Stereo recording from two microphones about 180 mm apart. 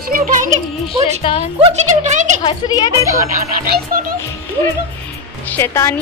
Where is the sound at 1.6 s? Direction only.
40° right (ahead or behind).